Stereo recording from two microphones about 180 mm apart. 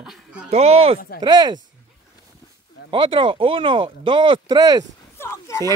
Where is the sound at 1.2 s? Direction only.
20° right (ahead or behind).